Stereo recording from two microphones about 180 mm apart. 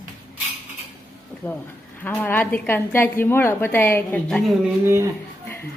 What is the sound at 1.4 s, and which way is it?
A woman's voice, 10° left (ahead or behind).